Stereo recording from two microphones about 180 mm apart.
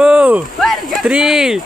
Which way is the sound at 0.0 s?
10° right (ahead or behind).